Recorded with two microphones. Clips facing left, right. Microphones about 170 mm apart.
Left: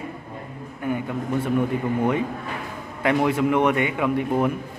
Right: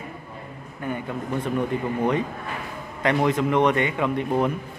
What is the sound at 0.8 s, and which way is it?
A man's voice, 10° left (ahead or behind).